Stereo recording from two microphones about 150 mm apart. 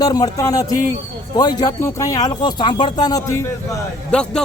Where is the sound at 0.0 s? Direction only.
25° left (ahead or behind).